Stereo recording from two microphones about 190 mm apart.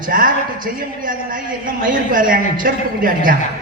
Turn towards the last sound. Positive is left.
turn(degrees=-45)  # may be behind; listen again after turning